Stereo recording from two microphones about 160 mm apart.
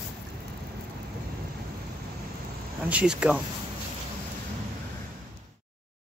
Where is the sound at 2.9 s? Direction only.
5° right (ahead or behind).